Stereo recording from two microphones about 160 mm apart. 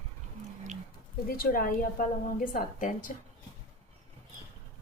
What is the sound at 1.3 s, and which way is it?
A woman's voice, 65° left (ahead or behind).